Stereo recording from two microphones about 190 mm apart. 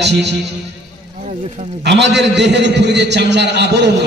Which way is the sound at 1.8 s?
65° right (ahead or behind).